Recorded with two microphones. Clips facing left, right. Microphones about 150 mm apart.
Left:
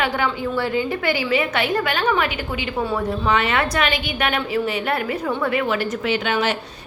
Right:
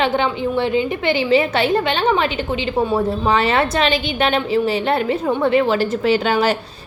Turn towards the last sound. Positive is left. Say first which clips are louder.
# right 5 dB
turn(degrees=-35)  # may be behind; listen again after turning